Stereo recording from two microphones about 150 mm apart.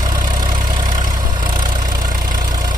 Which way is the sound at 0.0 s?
25° right (ahead or behind).